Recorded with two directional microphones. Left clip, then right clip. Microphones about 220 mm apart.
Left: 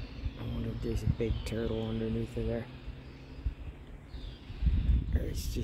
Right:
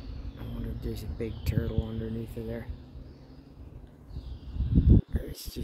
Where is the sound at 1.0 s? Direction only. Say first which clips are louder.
Left 2 dB; 15° left (ahead or behind).